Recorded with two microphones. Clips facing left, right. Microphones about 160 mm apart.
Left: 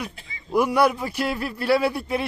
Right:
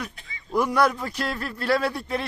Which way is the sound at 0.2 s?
30° left (ahead or behind).